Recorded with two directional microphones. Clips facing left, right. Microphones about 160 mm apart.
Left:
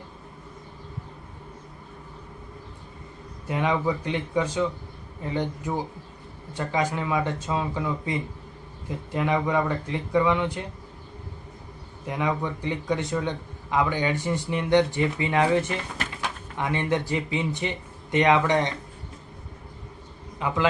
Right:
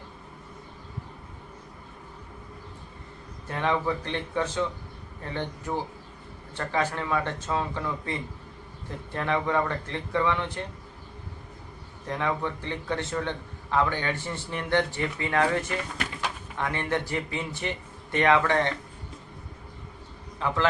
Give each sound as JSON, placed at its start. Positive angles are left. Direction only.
{"t": 3.5, "sound": "a man's voice", "side_deg": 10}
{"t": 9.1, "sound": "a man's voice", "side_deg": 15}
{"t": 12.0, "sound": "a man's voice", "side_deg": 15}
{"t": 20.4, "sound": "a man's voice", "side_deg": 15}